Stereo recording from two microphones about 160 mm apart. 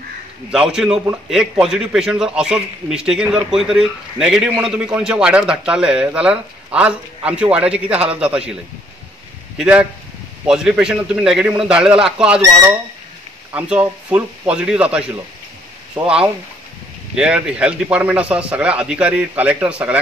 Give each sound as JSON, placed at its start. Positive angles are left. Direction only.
{"t": 0.5, "sound": "a man's voice", "side_deg": -5}
{"t": 9.6, "sound": "a man's voice", "side_deg": -10}
{"t": 13.5, "sound": "speech", "side_deg": -10}
{"t": 16.0, "sound": "speech", "side_deg": -30}
{"t": 17.1, "sound": "speech", "side_deg": -5}